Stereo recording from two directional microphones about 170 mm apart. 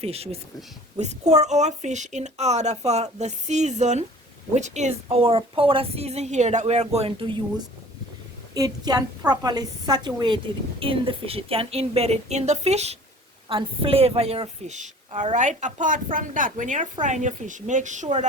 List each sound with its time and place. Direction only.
0.0 s a woman's voice: 35° right (ahead or behind)
8.5 s a woman's voice: 20° right (ahead or behind); by 18.3 s 45° right (ahead or behind)